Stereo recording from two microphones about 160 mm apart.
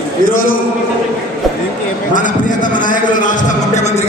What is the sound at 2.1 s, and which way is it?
A man's voice, 55° left (ahead or behind).